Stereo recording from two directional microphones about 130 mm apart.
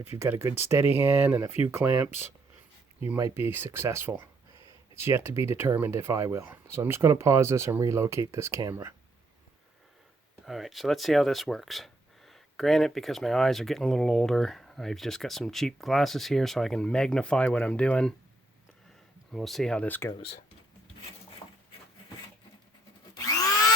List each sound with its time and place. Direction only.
0.0 s speech: 20° right (ahead or behind)
3.2 s speech: 20° right (ahead or behind)
10.4 s speech: centre (ahead or behind)
19.3 s speech: centre (ahead or behind)
21.4 s a sound: 35° left (ahead or behind)
23.1 s vacuum cleaner: 25° left (ahead or behind)